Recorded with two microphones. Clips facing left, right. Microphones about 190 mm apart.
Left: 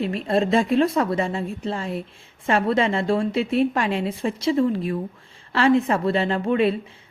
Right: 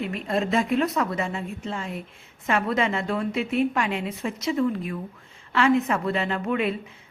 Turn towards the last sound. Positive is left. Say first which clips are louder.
# left 5 dB
turn(degrees=30)  # may be behind; listen again after turning